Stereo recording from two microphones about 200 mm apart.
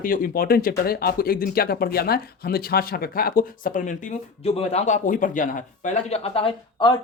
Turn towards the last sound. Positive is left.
turn(degrees=25)  # may be behind; listen again after turning